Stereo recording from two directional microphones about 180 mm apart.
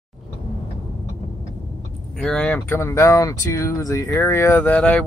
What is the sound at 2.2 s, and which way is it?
Speech, 5° left (ahead or behind).